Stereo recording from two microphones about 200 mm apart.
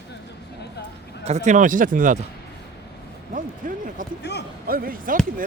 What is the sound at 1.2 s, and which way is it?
Speech, 35° right (ahead or behind).